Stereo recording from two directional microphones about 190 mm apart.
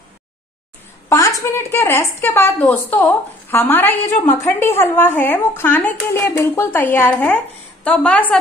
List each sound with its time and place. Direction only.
1.0 s a woman's voice: 15° left (ahead or behind)